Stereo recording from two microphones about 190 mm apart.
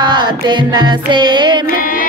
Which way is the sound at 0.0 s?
25° right (ahead or behind).